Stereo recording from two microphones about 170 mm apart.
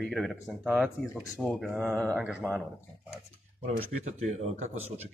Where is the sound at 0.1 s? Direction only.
Centre (ahead or behind).